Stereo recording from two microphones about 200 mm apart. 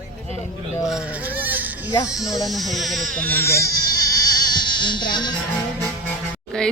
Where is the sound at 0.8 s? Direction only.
5° right (ahead or behind); by 3.7 s 15° left (ahead or behind).